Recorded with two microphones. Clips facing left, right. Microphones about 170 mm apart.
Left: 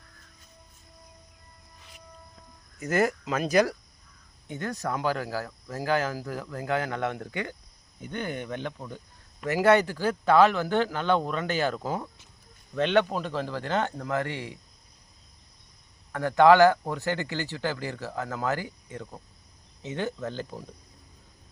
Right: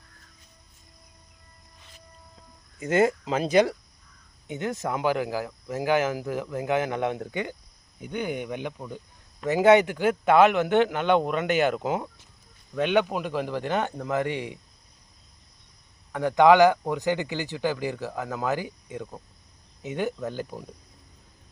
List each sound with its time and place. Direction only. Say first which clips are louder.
2.8 s speech: right 3 dB; 25° right (ahead or behind)
16.1 s speech: right 1 dB; 15° right (ahead or behind)